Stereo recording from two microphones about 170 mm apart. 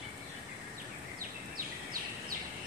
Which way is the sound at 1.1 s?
55° right (ahead or behind).